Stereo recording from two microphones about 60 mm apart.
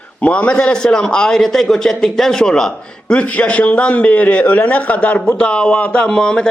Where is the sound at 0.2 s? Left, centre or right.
Left.